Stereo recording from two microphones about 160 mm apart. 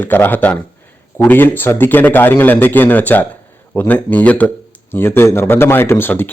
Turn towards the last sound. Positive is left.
turn(degrees=10)  # may be behind; listen again after turning